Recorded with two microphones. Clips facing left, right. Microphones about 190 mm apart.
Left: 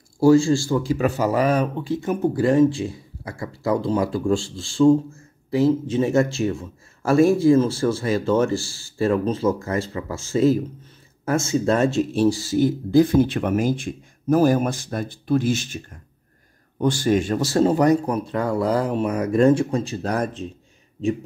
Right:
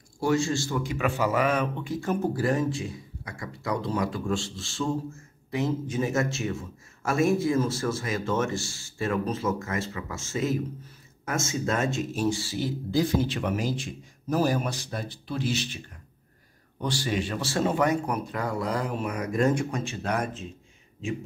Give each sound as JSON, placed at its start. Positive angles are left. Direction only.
{"t": 0.2, "sound": "speech", "side_deg": 30}
{"t": 2.0, "sound": "speech", "side_deg": 20}